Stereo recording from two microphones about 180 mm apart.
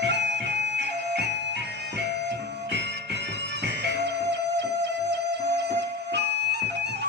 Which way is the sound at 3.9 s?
70° right (ahead or behind).